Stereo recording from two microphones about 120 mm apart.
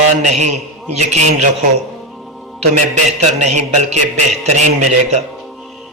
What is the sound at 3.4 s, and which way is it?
A man's voice, 80° right.